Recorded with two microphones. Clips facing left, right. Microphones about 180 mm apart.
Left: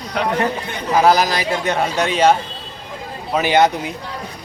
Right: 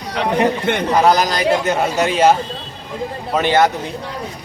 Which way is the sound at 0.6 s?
80° right.